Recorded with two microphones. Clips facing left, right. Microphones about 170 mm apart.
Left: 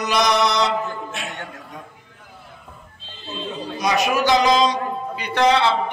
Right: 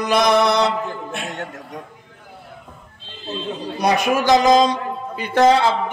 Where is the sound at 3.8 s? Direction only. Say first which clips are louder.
Right 2 dB; 55° right (ahead or behind).